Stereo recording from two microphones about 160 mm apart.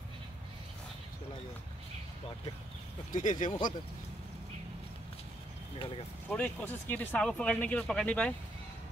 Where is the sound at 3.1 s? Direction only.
55° left (ahead or behind).